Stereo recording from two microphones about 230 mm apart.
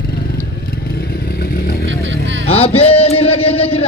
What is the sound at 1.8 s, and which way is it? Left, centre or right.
Vehicle, right.